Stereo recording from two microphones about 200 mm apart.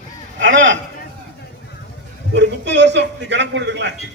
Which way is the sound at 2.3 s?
60° right (ahead or behind).